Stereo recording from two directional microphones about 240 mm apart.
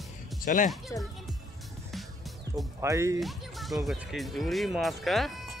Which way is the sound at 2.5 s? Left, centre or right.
Centre.